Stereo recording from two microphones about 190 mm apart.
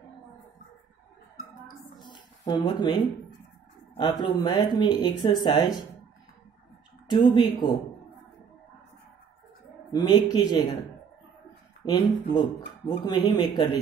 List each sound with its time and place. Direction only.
2.0 s a sound: 25° left (ahead or behind)
4.2 s speech: 20° left (ahead or behind)
7.1 s speech: 20° left (ahead or behind)
9.9 s speech: 20° left (ahead or behind)
11.8 s speech: 25° left (ahead or behind)